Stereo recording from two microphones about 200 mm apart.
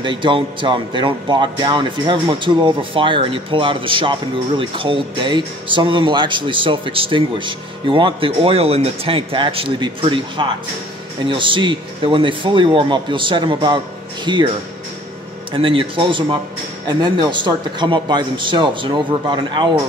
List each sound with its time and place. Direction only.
0.0 s speech: 25° right (ahead or behind)
15.5 s speech: 25° right (ahead or behind)